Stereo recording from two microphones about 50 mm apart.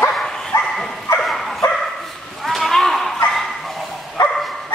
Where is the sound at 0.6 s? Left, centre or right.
Centre.